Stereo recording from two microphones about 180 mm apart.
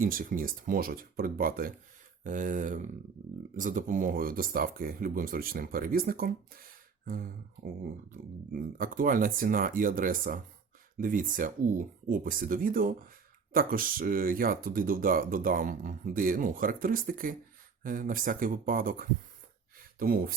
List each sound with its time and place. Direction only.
0.0 s speech: 50° right (ahead or behind)